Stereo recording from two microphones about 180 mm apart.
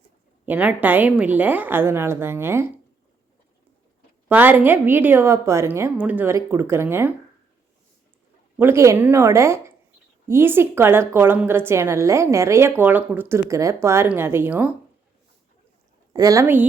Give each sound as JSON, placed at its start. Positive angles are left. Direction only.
{"t": 0.4, "sound": "a woman's voice", "side_deg": -5}
{"t": 4.3, "sound": "a woman's voice", "side_deg": -10}
{"t": 8.5, "sound": "a woman's voice", "side_deg": -15}
{"t": 16.1, "sound": "a woman's voice", "side_deg": -20}